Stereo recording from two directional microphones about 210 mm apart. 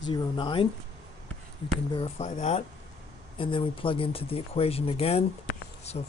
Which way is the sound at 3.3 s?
25° left (ahead or behind).